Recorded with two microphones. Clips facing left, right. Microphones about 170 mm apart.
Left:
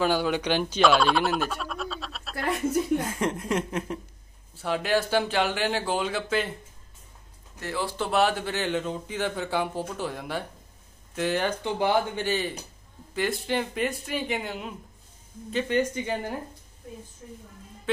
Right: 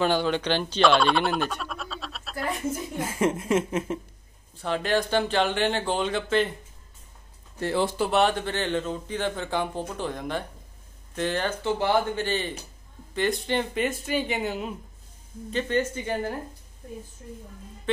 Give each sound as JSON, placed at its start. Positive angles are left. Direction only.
{"t": 0.0, "sound": "speech", "side_deg": 10}
{"t": 4.6, "sound": "speech", "side_deg": 10}
{"t": 7.6, "sound": "speech", "side_deg": -30}
{"t": 8.0, "sound": "speech", "side_deg": 0}
{"t": 15.5, "sound": "speech", "side_deg": 10}
{"t": 17.9, "sound": "music", "side_deg": 5}